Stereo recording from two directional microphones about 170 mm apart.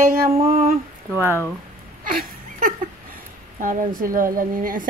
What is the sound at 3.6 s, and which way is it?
A woman's voice, 55° right (ahead or behind).